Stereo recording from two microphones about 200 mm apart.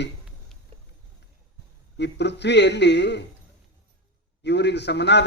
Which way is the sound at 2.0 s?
60° left (ahead or behind).